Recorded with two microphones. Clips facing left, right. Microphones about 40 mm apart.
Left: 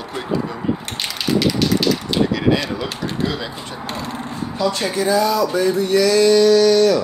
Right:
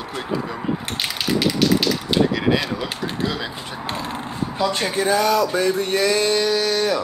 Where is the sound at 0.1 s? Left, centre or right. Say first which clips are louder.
Left 3 dB; centre.